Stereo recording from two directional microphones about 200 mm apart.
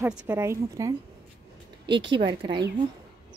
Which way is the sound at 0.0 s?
5° right (ahead or behind).